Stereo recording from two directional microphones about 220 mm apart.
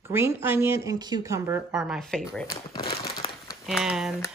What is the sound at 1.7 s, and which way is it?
Speech, centre (ahead or behind).